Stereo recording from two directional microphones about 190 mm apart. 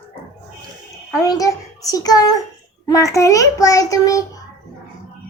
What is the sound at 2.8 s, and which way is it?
Child singing, 15° left (ahead or behind).